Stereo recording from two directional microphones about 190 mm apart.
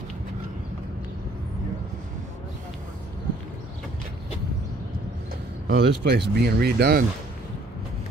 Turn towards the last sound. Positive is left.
turn(degrees=-55)  # may be behind; listen again after turning